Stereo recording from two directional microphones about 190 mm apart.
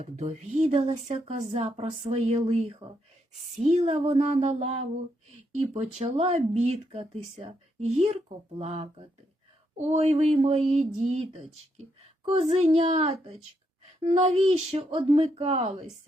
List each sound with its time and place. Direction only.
0.2 s speech: 40° right (ahead or behind)
12.3 s speech: 35° right (ahead or behind)